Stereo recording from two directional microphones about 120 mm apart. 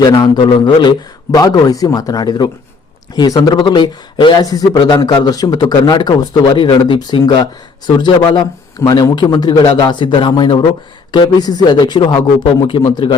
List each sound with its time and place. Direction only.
0.1 s speech: 35° left (ahead or behind)